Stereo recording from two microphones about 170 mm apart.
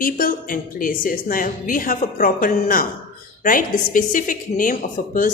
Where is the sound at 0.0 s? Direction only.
55° left (ahead or behind).